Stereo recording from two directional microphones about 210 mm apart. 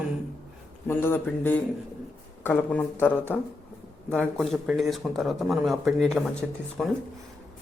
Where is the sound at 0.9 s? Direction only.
10° left (ahead or behind).